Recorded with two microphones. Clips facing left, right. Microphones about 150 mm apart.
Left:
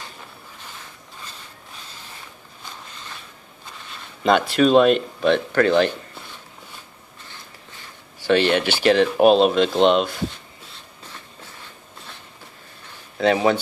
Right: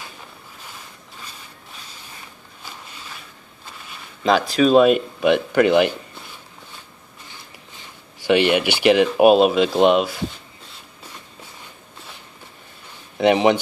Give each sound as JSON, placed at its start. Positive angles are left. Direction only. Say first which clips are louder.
{"t": 4.2, "sound": "speech", "louder": "even", "side_deg": 0}
{"t": 8.2, "sound": "speech", "louder": "right 1 dB", "side_deg": -15}
{"t": 13.2, "sound": "speech", "louder": "right 2 dB", "side_deg": -15}